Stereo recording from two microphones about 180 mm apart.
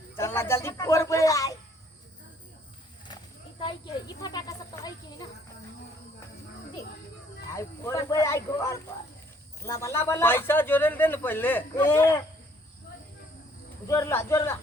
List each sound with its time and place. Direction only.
0.2 s speech: 15° left (ahead or behind)
3.6 s speech: 25° left (ahead or behind)
7.5 s speech: 15° left (ahead or behind)
13.8 s speech: 15° left (ahead or behind)